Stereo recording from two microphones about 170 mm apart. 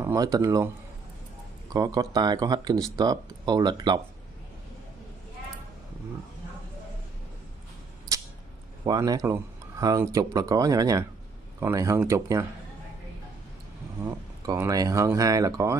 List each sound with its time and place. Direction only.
0.0 s speech: 20° right (ahead or behind)
1.7 s speech: 20° right (ahead or behind)
8.8 s speech: 20° right (ahead or behind)
14.0 s speech: 15° right (ahead or behind)